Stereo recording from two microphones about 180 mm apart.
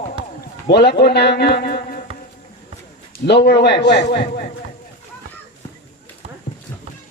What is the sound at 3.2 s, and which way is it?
A man's voice, 65° left (ahead or behind).